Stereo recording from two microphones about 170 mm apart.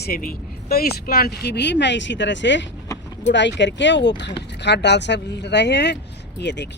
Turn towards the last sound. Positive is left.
turn(degrees=90)